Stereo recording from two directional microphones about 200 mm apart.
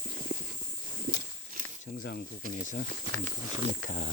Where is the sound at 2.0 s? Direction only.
50° left (ahead or behind).